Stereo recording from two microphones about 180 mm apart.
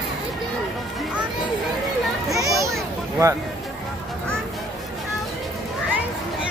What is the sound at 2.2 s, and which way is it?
Children playing, 20° right (ahead or behind).